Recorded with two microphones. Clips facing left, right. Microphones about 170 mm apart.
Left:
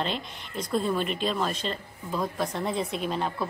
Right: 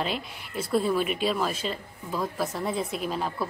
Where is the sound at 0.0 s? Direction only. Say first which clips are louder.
Even; 5° right (ahead or behind).